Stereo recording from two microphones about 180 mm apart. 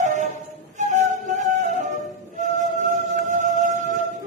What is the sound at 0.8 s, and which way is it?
Flute, 40° right (ahead or behind).